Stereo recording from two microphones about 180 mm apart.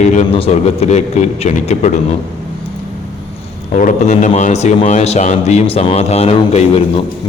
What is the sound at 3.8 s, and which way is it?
A man's voice, 45° left (ahead or behind).